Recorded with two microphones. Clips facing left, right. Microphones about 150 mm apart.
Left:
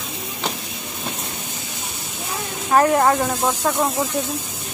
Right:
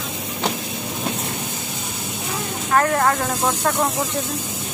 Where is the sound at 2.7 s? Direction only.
15° left (ahead or behind).